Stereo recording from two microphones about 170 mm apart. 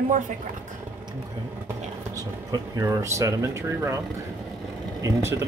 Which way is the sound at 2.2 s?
20° right (ahead or behind).